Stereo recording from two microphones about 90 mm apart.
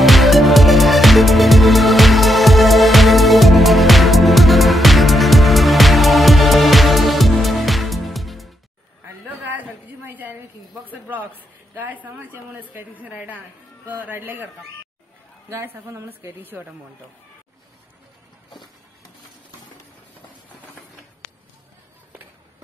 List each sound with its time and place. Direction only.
0.0 s music: centre (ahead or behind)
10.0 s a sound: 20° right (ahead or behind)
10.9 s a man's voice: 20° right (ahead or behind)
15.5 s speech: 30° right (ahead or behind)